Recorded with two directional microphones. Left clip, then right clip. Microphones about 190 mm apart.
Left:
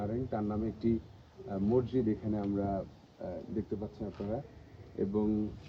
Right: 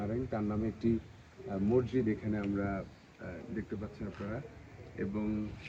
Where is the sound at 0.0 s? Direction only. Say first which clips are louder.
Left 1 dB; centre (ahead or behind).